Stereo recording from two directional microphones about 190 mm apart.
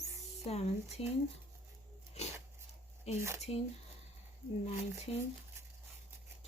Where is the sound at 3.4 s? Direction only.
30° left (ahead or behind).